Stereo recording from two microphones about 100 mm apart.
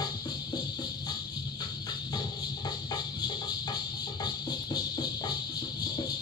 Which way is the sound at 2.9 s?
45° left (ahead or behind).